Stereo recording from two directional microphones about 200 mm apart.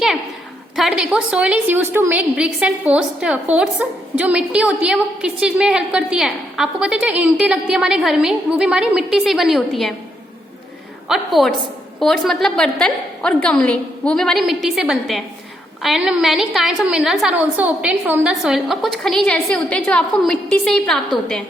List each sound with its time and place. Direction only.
0.8 s a woman's voice: centre (ahead or behind)
11.1 s a woman's voice: centre (ahead or behind)